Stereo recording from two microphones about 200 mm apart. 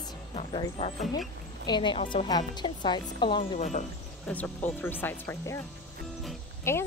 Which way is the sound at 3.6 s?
35° left (ahead or behind).